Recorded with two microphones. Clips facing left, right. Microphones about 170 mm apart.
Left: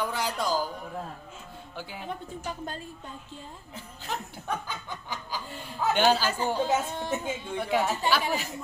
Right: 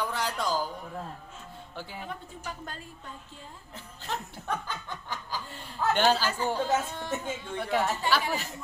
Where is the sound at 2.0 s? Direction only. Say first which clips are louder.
Left 4 dB; 25° left (ahead or behind).